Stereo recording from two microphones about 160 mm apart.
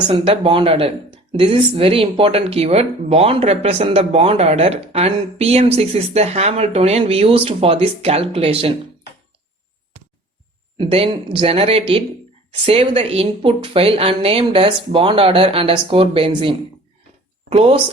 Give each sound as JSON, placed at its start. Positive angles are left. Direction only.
{"t": 0.1, "sound": "speech", "side_deg": -35}
{"t": 10.8, "sound": "speech", "side_deg": -35}